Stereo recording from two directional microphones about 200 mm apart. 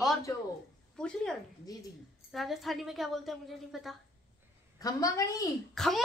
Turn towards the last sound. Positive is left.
turn(degrees=0)  # may be behind; listen again after turning